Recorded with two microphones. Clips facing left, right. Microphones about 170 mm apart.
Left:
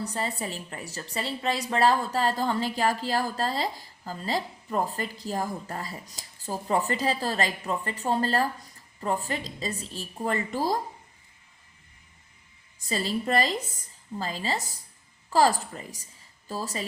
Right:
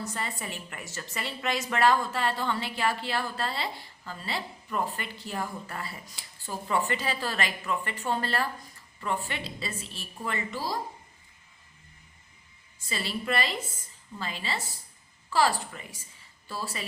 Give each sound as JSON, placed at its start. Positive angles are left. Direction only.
{"t": 0.0, "sound": "a woman's voice", "side_deg": 35}
{"t": 12.9, "sound": "a woman's voice", "side_deg": 40}